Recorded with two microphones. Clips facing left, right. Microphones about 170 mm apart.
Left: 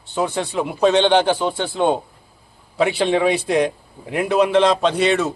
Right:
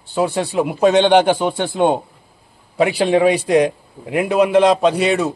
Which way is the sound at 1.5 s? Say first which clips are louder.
Right 3 dB; 50° right (ahead or behind).